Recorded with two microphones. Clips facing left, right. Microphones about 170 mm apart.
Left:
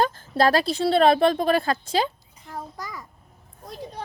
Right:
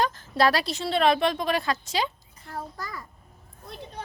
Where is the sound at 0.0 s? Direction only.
45° left (ahead or behind).